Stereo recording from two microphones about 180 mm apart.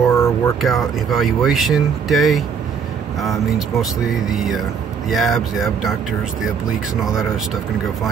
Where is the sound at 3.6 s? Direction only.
Centre (ahead or behind).